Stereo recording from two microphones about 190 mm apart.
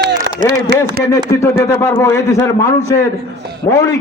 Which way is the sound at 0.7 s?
65° right (ahead or behind).